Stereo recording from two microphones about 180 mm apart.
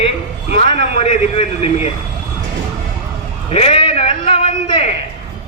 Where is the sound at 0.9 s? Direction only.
35° left (ahead or behind).